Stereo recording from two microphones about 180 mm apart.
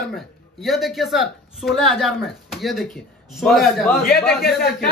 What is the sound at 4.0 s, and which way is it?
Speech, 55° left (ahead or behind).